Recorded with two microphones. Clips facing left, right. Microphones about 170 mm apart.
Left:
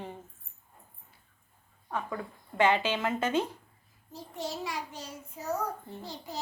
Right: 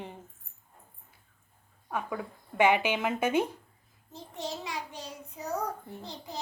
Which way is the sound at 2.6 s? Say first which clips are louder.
Right 1 dB; 15° right (ahead or behind).